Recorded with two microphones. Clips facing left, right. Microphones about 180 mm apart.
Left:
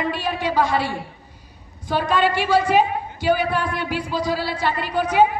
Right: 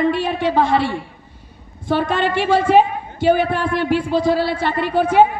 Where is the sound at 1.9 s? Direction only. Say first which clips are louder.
Right 2 dB; 55° right (ahead or behind).